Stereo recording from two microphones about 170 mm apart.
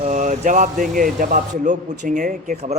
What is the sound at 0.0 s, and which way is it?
Speech, 45° right (ahead or behind).